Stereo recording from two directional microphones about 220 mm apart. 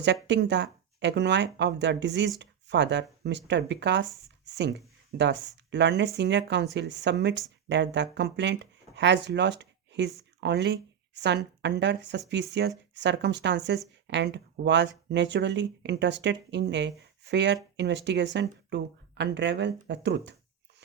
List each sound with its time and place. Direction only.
0.0 s speech: 55° right (ahead or behind)